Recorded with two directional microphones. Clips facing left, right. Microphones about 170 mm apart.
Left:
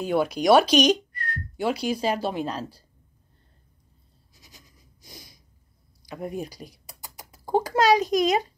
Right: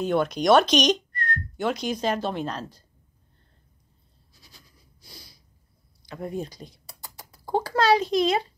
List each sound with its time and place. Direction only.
0.0 s speech: 5° left (ahead or behind)
4.6 s snort: 15° left (ahead or behind)
6.0 s speech: 15° left (ahead or behind)
6.9 s typing: 15° left (ahead or behind)
7.7 s a sound: 15° left (ahead or behind)
8.2 s speech: 15° left (ahead or behind)